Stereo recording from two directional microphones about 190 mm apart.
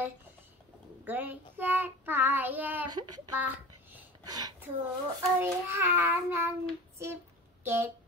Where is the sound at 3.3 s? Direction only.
10° right (ahead or behind).